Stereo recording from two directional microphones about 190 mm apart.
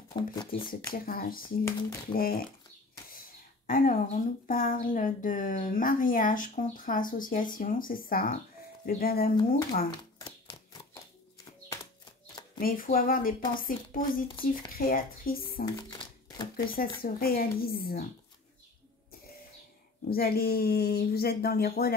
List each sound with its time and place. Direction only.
0.2 s speech: 25° left (ahead or behind)
0.9 s speech: 50° left (ahead or behind)
1.6 s speech: 15° left (ahead or behind)
2.1 s speech: 50° left (ahead or behind)
3.6 s speech: 45° left (ahead or behind)
10.2 s a sound: 20° left (ahead or behind)
12.5 s speech: 50° left (ahead or behind)
15.6 s speech: 20° left (ahead or behind)
16.5 s speech: 50° left (ahead or behind)
20.1 s speech: 55° left (ahead or behind)